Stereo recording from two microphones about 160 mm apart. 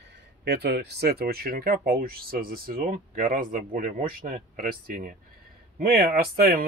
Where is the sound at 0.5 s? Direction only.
85° right.